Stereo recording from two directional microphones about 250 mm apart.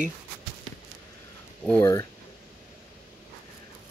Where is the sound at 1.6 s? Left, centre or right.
Centre.